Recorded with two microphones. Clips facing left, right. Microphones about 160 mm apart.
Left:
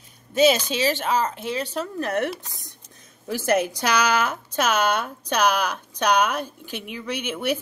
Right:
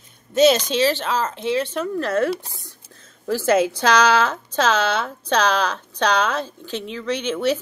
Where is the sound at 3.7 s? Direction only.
10° left (ahead or behind).